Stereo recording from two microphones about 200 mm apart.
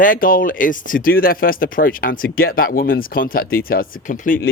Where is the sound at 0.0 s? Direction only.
45° left (ahead or behind).